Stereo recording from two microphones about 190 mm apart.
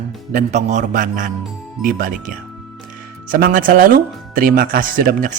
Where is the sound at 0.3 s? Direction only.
40° right (ahead or behind).